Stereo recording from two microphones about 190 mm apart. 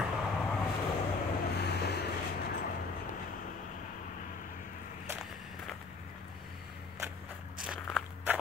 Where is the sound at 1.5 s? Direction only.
60° left (ahead or behind).